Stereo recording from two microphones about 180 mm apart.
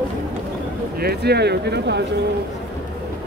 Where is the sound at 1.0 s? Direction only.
60° right (ahead or behind).